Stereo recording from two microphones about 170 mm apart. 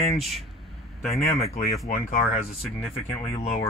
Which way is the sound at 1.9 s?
55° left (ahead or behind).